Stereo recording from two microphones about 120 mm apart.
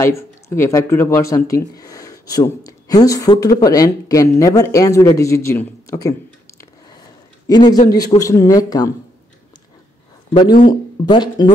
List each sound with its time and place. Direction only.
0.0 s speech: 20° left (ahead or behind)
7.4 s speech: 35° left (ahead or behind)
10.3 s speech: 40° left (ahead or behind)